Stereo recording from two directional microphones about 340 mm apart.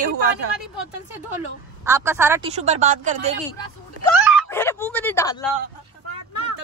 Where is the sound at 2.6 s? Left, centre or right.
Centre.